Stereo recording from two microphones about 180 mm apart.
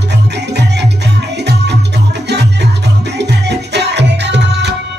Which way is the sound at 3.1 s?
70° right (ahead or behind).